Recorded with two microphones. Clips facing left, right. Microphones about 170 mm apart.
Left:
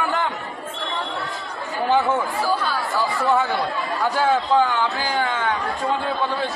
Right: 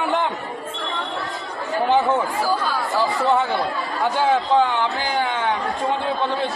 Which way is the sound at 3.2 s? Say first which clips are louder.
Left 1 dB; 20° right (ahead or behind).